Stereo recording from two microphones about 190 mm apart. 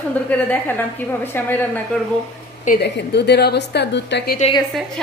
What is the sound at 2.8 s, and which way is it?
A woman's voice, 60° left (ahead or behind).